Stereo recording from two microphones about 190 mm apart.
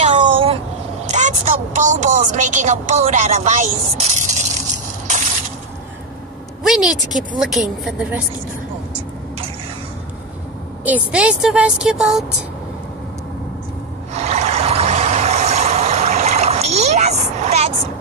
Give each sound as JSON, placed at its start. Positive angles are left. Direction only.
{"t": 0.0, "sound": "vehicle", "side_deg": -30}
{"t": 1.1, "sound": "a woman's voice", "side_deg": -40}
{"t": 5.0, "sound": "coin", "side_deg": -40}
{"t": 6.6, "sound": "speech", "side_deg": 0}
{"t": 10.8, "sound": "speech", "side_deg": -5}
{"t": 14.1, "sound": "a sound", "side_deg": -35}